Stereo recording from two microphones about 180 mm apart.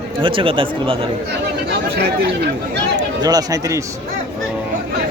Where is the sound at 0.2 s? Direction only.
30° right (ahead or behind).